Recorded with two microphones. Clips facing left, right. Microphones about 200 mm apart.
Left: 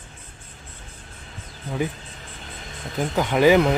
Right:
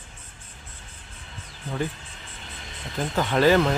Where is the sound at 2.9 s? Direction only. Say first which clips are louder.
Left 2 dB; 15° left (ahead or behind).